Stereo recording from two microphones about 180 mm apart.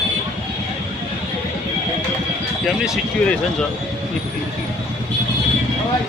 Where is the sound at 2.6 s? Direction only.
Centre (ahead or behind).